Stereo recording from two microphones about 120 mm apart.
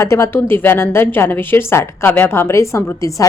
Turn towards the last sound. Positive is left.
turn(degrees=25)  # may be behind; listen again after turning